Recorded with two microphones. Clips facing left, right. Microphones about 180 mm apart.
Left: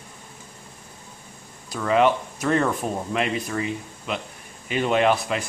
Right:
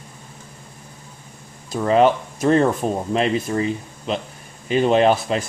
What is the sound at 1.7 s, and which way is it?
Speech, 35° right (ahead or behind).